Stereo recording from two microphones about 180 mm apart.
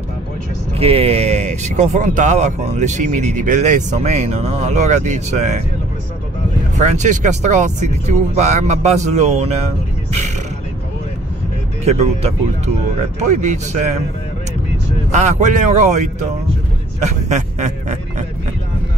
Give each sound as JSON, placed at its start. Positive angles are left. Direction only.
{"t": 0.7, "sound": "speech", "side_deg": -30}
{"t": 6.8, "sound": "speech", "side_deg": -40}
{"t": 11.8, "sound": "speech", "side_deg": -40}
{"t": 15.0, "sound": "speech", "side_deg": -40}